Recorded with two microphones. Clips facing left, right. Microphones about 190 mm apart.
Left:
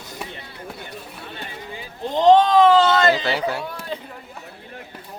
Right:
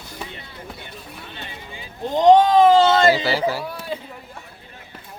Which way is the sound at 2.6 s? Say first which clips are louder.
Right 1 dB; 30° right (ahead or behind).